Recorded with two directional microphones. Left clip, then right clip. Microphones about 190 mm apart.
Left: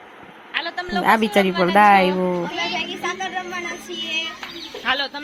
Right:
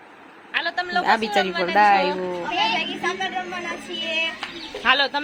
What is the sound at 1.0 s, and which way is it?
Speech, 20° left (ahead or behind).